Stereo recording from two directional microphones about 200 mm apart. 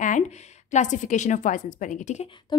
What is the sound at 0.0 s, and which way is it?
A woman's voice, 35° left (ahead or behind).